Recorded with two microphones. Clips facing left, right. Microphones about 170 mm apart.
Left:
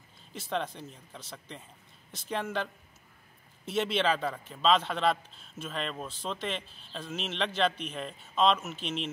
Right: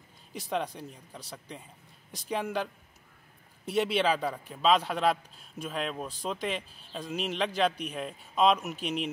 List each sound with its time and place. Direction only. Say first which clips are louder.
0.3 s a man's voice: right 1 dB; 10° right (ahead or behind)
3.6 s a man's voice: right 2 dB; 10° right (ahead or behind)